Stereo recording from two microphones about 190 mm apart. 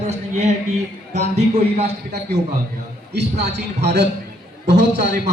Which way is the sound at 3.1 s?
60° right (ahead or behind).